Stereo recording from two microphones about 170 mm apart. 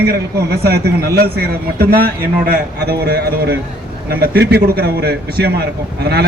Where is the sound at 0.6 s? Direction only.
70° right (ahead or behind).